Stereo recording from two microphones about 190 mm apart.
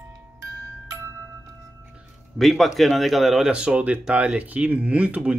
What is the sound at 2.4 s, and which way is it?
Speech, centre (ahead or behind).